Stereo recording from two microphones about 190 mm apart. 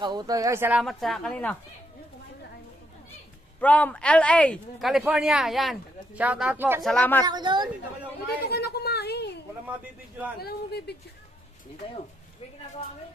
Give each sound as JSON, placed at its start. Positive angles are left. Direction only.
{"t": 0.0, "sound": "speech", "side_deg": -20}
{"t": 3.6, "sound": "speech", "side_deg": 10}
{"t": 6.8, "sound": "speech", "side_deg": 5}
{"t": 7.2, "sound": "a woman's voice", "side_deg": -20}
{"t": 8.5, "sound": "a sound", "side_deg": 55}
{"t": 10.4, "sound": "speech", "side_deg": 60}